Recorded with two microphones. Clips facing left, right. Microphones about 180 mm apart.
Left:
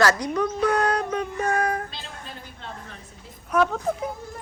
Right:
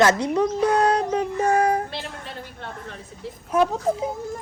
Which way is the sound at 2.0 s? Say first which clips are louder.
Right 5 dB; 65° right (ahead or behind).